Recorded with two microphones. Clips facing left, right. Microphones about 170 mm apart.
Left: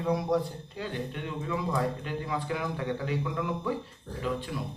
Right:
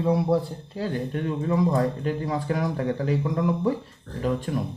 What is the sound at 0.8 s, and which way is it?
Speech, 40° right (ahead or behind).